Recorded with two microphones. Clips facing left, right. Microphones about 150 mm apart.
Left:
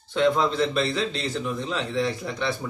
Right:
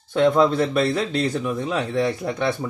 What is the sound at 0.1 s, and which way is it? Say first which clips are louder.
A man's voice: right 5 dB; 50° right (ahead or behind).